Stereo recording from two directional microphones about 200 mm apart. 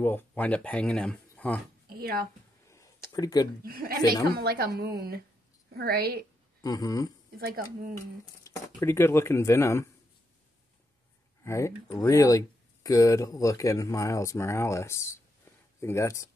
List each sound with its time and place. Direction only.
0.0 s speech: 10° left (ahead or behind)
1.9 s a sound: 50° right (ahead or behind)
3.1 s speech: 20° left (ahead or behind)
3.6 s a woman's voice: 50° right (ahead or behind)
6.6 s speech: 20° left (ahead or behind)
7.3 s a woman's voice: 50° right (ahead or behind)
8.5 s speech: 15° left (ahead or behind)
11.4 s speech: 15° left (ahead or behind)